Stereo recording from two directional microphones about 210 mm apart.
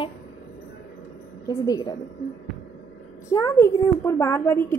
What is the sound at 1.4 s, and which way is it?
Speech, 20° left (ahead or behind).